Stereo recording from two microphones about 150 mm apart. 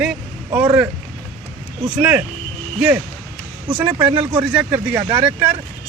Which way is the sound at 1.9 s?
10° right (ahead or behind).